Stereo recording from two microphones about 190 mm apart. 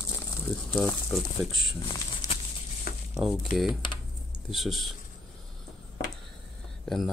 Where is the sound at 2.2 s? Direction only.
20° left (ahead or behind).